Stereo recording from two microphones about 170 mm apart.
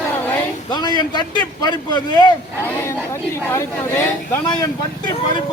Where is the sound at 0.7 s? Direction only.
25° left (ahead or behind).